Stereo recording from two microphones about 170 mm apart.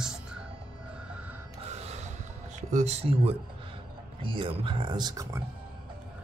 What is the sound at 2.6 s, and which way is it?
Speech, 45° right (ahead or behind).